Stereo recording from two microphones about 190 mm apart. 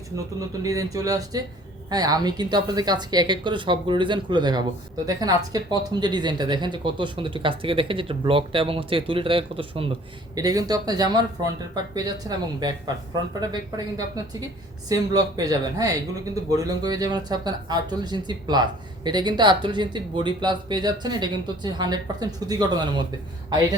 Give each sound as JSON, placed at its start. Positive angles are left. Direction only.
{"t": 0.3, "sound": "speech", "side_deg": -15}
{"t": 14.8, "sound": "speech", "side_deg": -20}